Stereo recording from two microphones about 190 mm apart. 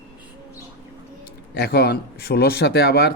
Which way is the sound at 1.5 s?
60° left (ahead or behind).